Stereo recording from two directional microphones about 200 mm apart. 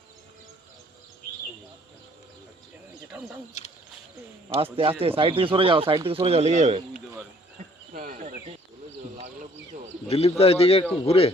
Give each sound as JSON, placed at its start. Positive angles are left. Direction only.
{"t": 3.1, "sound": "wild animals", "side_deg": -5}
{"t": 4.4, "sound": "speech", "side_deg": -25}
{"t": 7.9, "sound": "cricket", "side_deg": -40}
{"t": 10.1, "sound": "a man's voice", "side_deg": 30}